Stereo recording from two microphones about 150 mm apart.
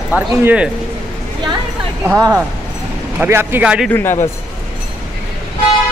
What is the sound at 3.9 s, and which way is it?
Speech, 15° left (ahead or behind).